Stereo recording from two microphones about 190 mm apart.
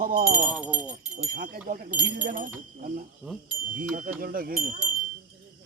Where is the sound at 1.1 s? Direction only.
50° right (ahead or behind).